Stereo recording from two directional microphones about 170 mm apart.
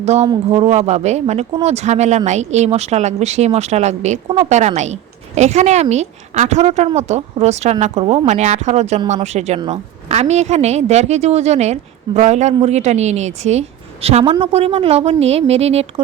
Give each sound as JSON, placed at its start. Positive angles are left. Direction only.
{"t": 0.0, "sound": "a woman's voice", "side_deg": -40}